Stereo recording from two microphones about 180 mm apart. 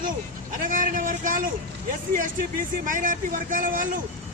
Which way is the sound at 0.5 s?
50° right (ahead or behind).